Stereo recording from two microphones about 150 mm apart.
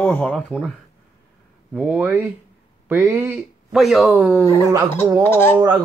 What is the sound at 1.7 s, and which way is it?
Speech, 5° right (ahead or behind).